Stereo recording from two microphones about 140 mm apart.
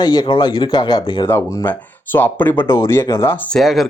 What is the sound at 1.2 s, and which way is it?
Speech, 20° left (ahead or behind).